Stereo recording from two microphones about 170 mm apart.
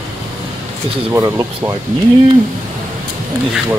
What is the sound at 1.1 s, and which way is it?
Speech, 20° right (ahead or behind).